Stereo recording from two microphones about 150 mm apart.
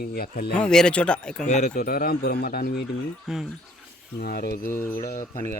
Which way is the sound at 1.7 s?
75° left (ahead or behind).